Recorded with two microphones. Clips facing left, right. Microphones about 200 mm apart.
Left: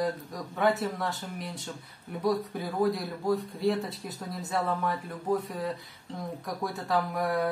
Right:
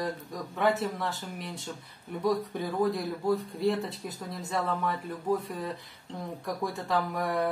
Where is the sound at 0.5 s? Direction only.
Centre (ahead or behind).